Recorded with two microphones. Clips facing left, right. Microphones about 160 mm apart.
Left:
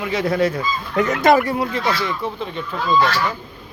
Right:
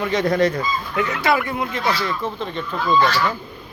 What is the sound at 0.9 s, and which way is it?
Speech, 40° left (ahead or behind).